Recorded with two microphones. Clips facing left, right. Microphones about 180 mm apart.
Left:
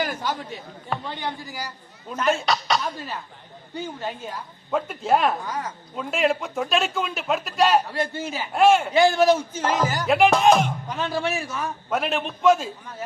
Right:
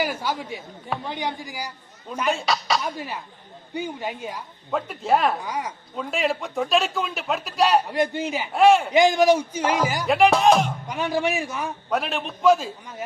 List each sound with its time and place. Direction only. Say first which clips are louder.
0.0 s a man's voice: right 1 dB; 10° right (ahead or behind)
2.3 s speech: even; centre (ahead or behind)
3.8 s a man's voice: right 2 dB; 15° right (ahead or behind)
4.7 s speech: even; centre (ahead or behind)
5.4 s a man's voice: right 1 dB; 10° right (ahead or behind)
6.0 s speech: left 2 dB; centre (ahead or behind)
7.9 s a man's voice: right 4 dB; 15° right (ahead or behind)
8.5 s speech: right 1 dB; centre (ahead or behind)
8.9 s a man's voice: right 1 dB; 15° right (ahead or behind)
10.1 s speech: even; centre (ahead or behind)
10.8 s a man's voice: right 2 dB; 15° right (ahead or behind)
11.9 s speech: left 1 dB; centre (ahead or behind)